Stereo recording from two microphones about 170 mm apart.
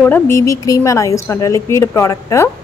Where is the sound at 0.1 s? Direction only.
15° left (ahead or behind).